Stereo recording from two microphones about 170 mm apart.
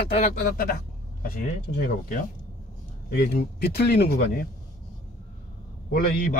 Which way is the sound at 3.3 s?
70° left (ahead or behind).